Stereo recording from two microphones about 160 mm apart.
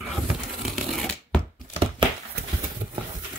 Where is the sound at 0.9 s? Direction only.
5° left (ahead or behind).